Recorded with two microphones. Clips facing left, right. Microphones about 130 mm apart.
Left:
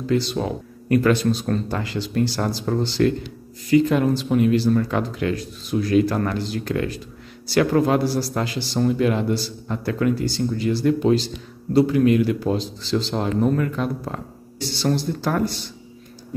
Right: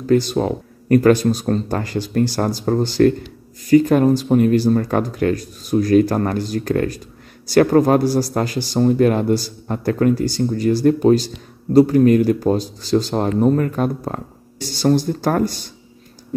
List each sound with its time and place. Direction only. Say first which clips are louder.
0.0 s speech: right 5 dB; 45° right (ahead or behind)